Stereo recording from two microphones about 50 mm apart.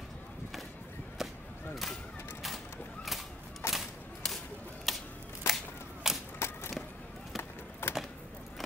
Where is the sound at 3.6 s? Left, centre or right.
Left.